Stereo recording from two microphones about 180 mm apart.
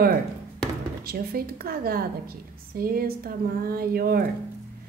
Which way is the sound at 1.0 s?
55° right (ahead or behind).